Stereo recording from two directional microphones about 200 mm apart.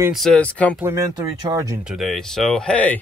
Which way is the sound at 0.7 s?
10° right (ahead or behind).